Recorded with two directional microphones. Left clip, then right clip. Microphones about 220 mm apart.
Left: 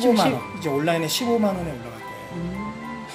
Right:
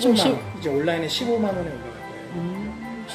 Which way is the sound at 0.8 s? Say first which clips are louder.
Left 3 dB; 50° left (ahead or behind).